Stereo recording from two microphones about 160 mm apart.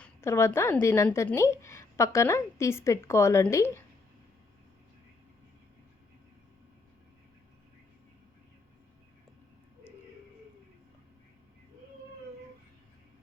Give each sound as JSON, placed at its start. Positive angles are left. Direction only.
{"t": 0.0, "sound": "a woman's voice", "side_deg": 15}